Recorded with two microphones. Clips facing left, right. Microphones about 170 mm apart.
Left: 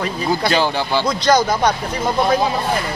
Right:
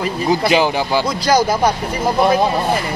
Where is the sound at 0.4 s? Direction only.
10° right (ahead or behind).